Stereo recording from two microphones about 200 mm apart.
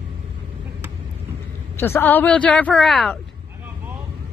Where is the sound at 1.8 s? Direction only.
10° left (ahead or behind).